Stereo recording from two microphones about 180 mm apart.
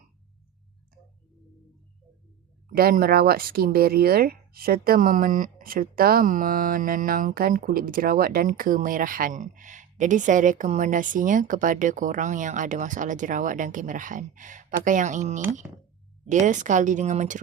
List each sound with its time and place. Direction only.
2.6 s speech: 55° right (ahead or behind)